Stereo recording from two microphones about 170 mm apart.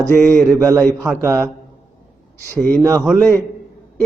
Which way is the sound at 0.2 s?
10° left (ahead or behind).